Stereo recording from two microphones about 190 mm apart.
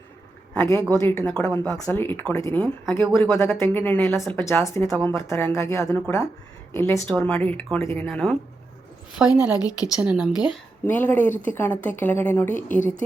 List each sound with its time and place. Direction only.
0.5 s speech: 10° left (ahead or behind)
9.3 s a woman's voice: 20° left (ahead or behind)
10.0 s speech: 5° right (ahead or behind)
10.8 s speech: 10° left (ahead or behind)